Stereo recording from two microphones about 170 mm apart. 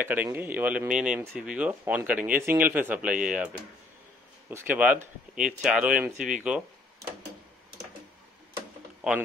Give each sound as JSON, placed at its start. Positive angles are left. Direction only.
{"t": 0.0, "sound": "speech", "side_deg": -10}
{"t": 9.0, "sound": "speech", "side_deg": -5}